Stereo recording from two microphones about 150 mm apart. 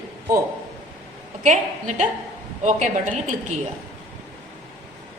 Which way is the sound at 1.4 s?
55° right (ahead or behind).